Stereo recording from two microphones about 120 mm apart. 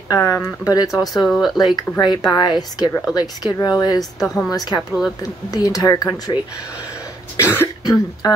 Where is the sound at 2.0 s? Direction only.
35° left (ahead or behind).